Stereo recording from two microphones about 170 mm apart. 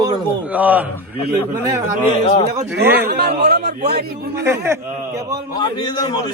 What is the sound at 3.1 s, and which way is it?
A man's voice, 75° right (ahead or behind).